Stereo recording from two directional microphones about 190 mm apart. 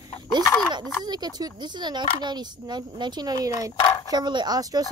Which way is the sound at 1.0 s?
20° right (ahead or behind).